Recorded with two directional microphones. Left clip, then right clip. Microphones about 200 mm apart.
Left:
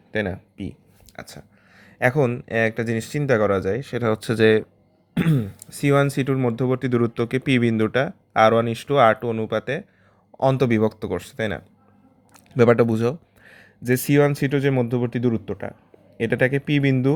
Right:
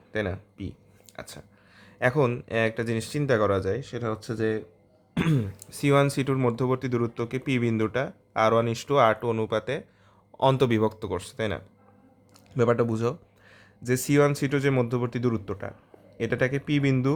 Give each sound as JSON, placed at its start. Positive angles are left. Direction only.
{"t": 0.1, "sound": "speech", "side_deg": 15}
{"t": 5.1, "sound": "speech", "side_deg": 10}